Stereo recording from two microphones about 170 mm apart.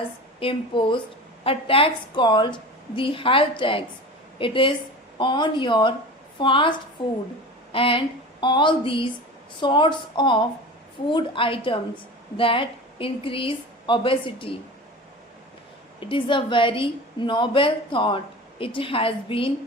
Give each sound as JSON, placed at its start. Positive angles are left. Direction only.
{"t": 0.3, "sound": "a woman's voice", "side_deg": 30}
{"t": 16.0, "sound": "a woman's voice", "side_deg": 30}